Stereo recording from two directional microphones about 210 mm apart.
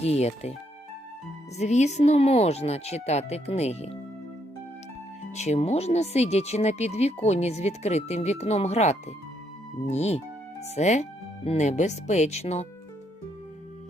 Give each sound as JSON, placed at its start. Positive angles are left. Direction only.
{"t": 0.0, "sound": "speech", "side_deg": 30}
{"t": 1.5, "sound": "speech", "side_deg": 35}
{"t": 5.3, "sound": "speech", "side_deg": 30}